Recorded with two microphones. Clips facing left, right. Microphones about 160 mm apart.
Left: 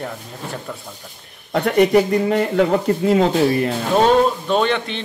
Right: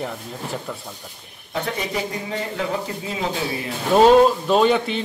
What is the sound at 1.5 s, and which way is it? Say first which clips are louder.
Speech: left 11 dB; 60° left (ahead or behind).